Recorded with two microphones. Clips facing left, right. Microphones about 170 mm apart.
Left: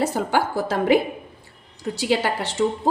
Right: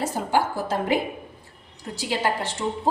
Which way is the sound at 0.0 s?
80° left.